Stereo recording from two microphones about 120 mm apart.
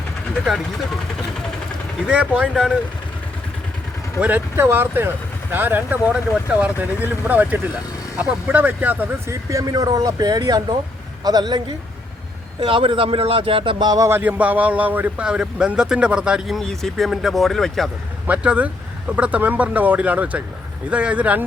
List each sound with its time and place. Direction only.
2.0 s a man's voice: 10° right (ahead or behind)
4.2 s a man's voice: 15° right (ahead or behind)
9.5 s speech: 30° right (ahead or behind)
12.5 s speech: 45° right (ahead or behind)
14.1 s a man's voice: 15° right (ahead or behind)
16.6 s speech: 5° left (ahead or behind)
18.3 s a man's voice: 10° right (ahead or behind)